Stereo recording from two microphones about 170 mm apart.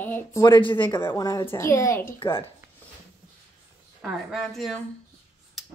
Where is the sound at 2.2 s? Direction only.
30° left (ahead or behind).